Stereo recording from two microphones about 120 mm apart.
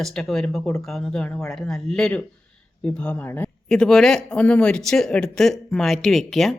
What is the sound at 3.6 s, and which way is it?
Speech, 5° left (ahead or behind).